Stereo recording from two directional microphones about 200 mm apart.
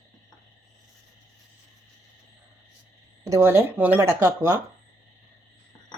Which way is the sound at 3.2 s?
15° right (ahead or behind).